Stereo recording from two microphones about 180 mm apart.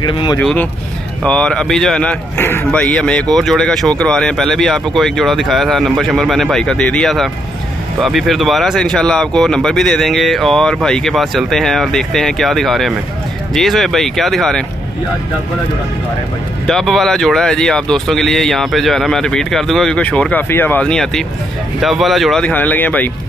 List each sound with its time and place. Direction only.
0.0 s speech: 25° left (ahead or behind)
0.4 s speech: 5° left (ahead or behind)
16.6 s speech: centre (ahead or behind)